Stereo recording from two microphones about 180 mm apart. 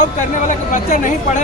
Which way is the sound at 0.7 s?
45° left (ahead or behind).